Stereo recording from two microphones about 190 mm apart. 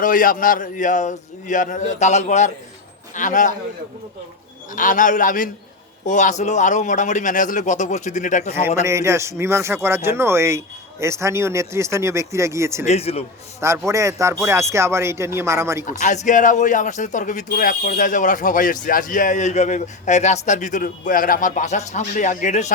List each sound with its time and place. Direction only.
0.0 s a man's voice: 45° left (ahead or behind)
4.7 s a man's voice: 45° left (ahead or behind)
8.8 s speech: 15° right (ahead or behind)
12.8 s speech: 35° left (ahead or behind)
13.6 s speech: 15° right (ahead or behind)
15.9 s speech: 40° left (ahead or behind)